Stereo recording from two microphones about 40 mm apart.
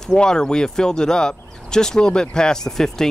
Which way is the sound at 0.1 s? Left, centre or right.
Centre.